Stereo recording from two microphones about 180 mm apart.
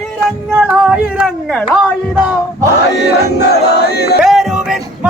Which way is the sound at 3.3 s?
65° left (ahead or behind).